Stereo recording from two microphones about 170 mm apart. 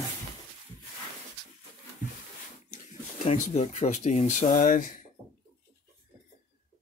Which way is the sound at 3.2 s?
40° left (ahead or behind).